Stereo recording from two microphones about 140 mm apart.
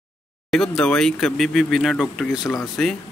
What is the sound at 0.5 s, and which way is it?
Speech, 5° left (ahead or behind).